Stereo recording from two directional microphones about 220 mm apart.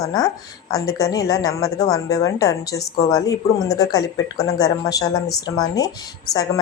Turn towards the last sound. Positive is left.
turn(degrees=15)  # may be behind; listen again after turning